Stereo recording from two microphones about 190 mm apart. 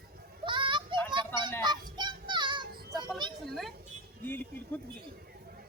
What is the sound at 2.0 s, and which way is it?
Child singing, 25° right (ahead or behind).